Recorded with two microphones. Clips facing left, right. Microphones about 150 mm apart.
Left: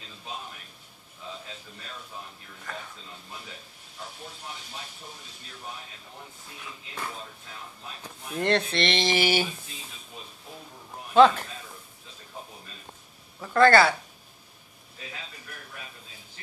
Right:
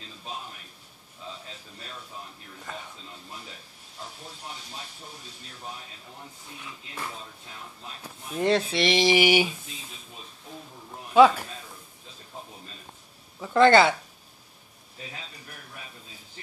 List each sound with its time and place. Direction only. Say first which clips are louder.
2.7 s speech: even; 20° right (ahead or behind)
8.0 s speech: right 3 dB; 10° right (ahead or behind)
10.5 s a sound: right 2 dB; 5° left (ahead or behind)
11.1 s speech: right 1 dB; 10° right (ahead or behind)
13.4 s speech: right 1 dB; 15° right (ahead or behind)